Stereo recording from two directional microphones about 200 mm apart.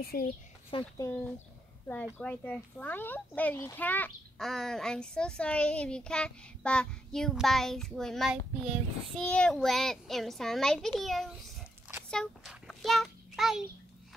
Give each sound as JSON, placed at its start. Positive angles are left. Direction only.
{"t": 0.1, "sound": "speech", "side_deg": 50}
{"t": 0.7, "sound": "a child's voice", "side_deg": 20}